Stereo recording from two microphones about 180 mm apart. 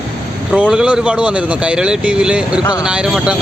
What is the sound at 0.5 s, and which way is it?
Speech, 5° right (ahead or behind).